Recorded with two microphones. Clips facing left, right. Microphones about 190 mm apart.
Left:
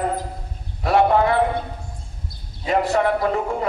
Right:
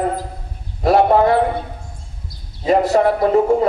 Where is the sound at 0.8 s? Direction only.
40° right (ahead or behind).